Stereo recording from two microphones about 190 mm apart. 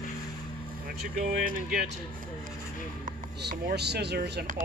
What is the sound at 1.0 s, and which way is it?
Speech, 45° right (ahead or behind).